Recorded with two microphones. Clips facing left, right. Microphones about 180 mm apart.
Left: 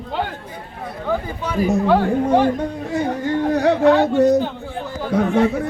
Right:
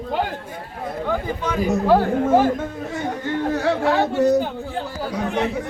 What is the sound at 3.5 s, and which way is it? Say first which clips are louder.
Speech: left 6 dB; 15° left (ahead or behind).